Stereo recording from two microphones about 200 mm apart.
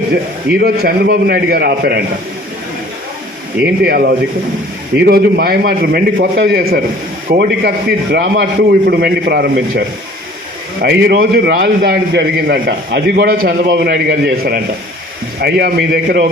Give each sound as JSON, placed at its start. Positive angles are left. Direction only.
{"t": 0.6, "sound": "a man's voice", "side_deg": -50}
{"t": 3.6, "sound": "a man's voice", "side_deg": -55}
{"t": 10.8, "sound": "a man's voice", "side_deg": -50}